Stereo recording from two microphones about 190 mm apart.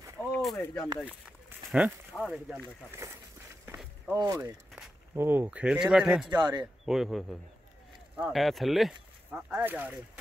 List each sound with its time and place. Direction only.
0.3 s a sound: centre (ahead or behind)
1.7 s speech: 5° right (ahead or behind)
3.0 s speech: 15° right (ahead or behind)
3.6 s a sound: 10° right (ahead or behind)
5.1 s speech: 10° right (ahead or behind)
6.2 s a man's voice: 25° right (ahead or behind)
6.9 s speech: centre (ahead or behind)